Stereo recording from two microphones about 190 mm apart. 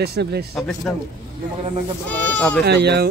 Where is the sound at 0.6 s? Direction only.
Centre (ahead or behind).